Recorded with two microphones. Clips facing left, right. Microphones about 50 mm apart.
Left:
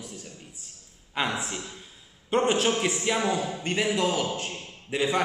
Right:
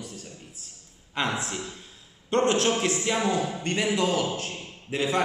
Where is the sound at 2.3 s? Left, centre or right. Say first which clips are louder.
Right 1 dB; centre.